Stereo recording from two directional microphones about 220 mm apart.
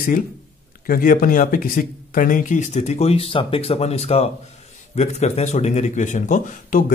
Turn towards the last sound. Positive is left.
turn(degrees=35)  # may be behind; listen again after turning